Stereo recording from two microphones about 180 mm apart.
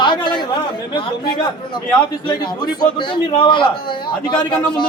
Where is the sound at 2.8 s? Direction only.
25° left (ahead or behind).